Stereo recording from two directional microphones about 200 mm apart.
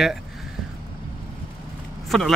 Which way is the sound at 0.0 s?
Centre (ahead or behind).